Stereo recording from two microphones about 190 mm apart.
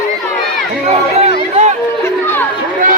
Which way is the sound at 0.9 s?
35° right (ahead or behind).